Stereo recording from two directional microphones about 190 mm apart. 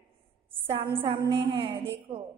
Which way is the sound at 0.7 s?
25° right (ahead or behind).